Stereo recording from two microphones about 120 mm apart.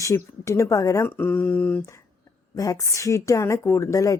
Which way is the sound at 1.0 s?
15° left (ahead or behind).